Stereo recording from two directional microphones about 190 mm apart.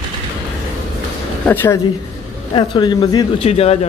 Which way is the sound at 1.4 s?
10° left (ahead or behind).